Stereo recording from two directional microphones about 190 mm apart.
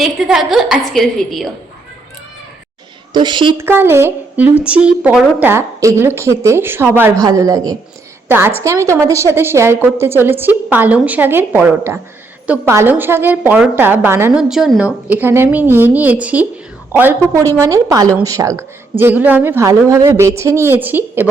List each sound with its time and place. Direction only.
0.0 s a woman's voice: centre (ahead or behind)
3.1 s a woman's voice: 25° right (ahead or behind)
3.6 s a woman's voice: 10° right (ahead or behind)